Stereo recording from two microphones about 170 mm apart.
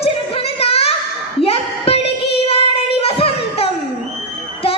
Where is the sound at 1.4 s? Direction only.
35° left (ahead or behind).